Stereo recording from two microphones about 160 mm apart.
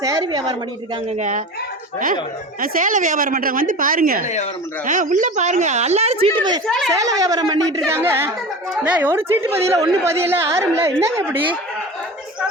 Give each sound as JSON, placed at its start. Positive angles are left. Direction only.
{"t": 0.0, "sound": "a woman's voice", "side_deg": -25}
{"t": 1.1, "sound": "a woman's voice", "side_deg": -50}
{"t": 2.6, "sound": "a woman's voice", "side_deg": -55}
{"t": 6.7, "sound": "speech", "side_deg": 0}
{"t": 6.9, "sound": "a woman's voice", "side_deg": -20}